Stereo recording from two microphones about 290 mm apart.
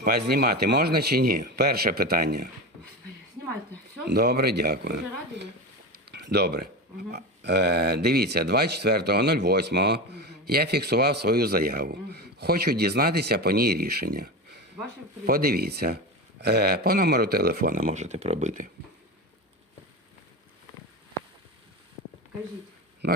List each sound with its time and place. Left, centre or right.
0.0 s speech: right
4.0 s speech: right
6.1 s a sound: right
7.1 s speech: right
15.3 s speech: right
23.0 s speech: right